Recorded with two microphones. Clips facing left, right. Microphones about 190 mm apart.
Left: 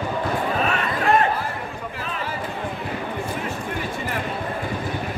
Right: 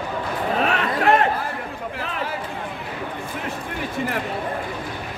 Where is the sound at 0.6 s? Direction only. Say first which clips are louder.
Right 2 dB; 65° right (ahead or behind).